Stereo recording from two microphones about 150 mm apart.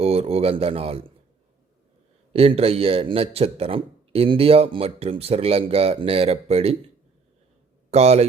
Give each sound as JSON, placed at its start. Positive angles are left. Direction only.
{"t": 0.0, "sound": "a man's voice", "side_deg": -40}
{"t": 2.3, "sound": "a man's voice", "side_deg": -40}
{"t": 7.9, "sound": "speech", "side_deg": -45}